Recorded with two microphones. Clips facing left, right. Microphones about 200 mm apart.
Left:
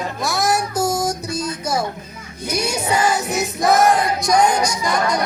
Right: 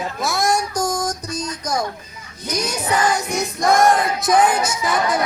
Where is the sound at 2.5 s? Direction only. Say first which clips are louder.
Left 1 dB; 10° left (ahead or behind).